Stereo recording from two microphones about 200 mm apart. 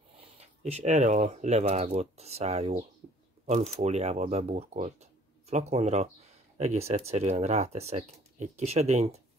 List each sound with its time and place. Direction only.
0.4 s speech: 30° right (ahead or behind)
3.0 s a sound: 35° right (ahead or behind)
3.4 s speech: 35° right (ahead or behind)